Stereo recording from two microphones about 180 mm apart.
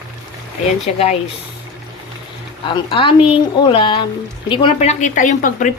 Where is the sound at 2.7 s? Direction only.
30° left (ahead or behind).